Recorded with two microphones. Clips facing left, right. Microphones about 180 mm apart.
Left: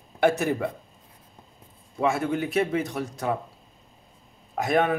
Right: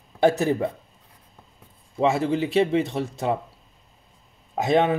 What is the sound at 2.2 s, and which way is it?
Speech, 25° right (ahead or behind).